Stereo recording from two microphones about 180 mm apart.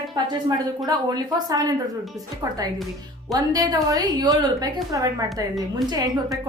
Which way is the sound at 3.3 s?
20° right (ahead or behind).